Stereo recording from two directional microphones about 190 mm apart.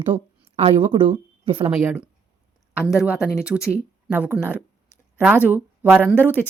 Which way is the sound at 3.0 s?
5° right (ahead or behind).